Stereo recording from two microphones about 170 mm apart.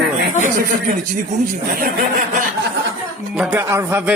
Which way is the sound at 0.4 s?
50° right (ahead or behind).